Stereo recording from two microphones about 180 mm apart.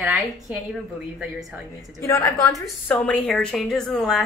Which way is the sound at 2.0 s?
15° left (ahead or behind).